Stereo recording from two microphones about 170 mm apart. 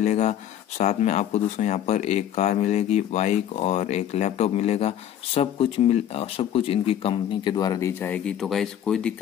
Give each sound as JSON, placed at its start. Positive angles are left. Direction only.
{"t": 0.0, "sound": "speech", "side_deg": 40}